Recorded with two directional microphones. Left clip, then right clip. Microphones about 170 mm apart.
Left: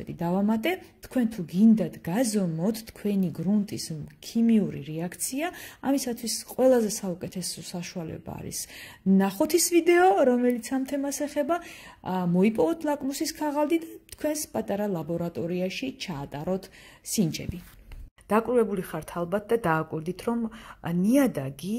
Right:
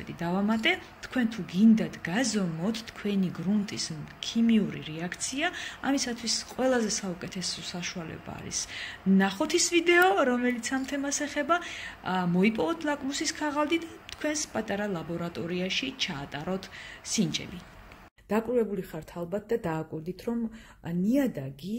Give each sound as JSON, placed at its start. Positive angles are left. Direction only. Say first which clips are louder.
{"t": 0.2, "sound": "a woman's voice", "louder": "left 1 dB", "side_deg": 40}
{"t": 18.3, "sound": "speech", "louder": "left 4 dB", "side_deg": -10}